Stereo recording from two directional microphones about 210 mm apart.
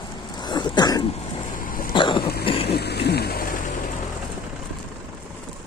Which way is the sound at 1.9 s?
25° left (ahead or behind).